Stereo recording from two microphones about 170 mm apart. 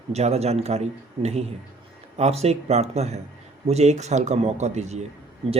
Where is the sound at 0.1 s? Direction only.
40° right (ahead or behind).